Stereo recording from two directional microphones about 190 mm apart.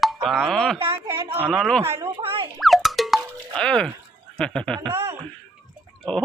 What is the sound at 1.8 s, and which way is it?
Speech, 15° right (ahead or behind).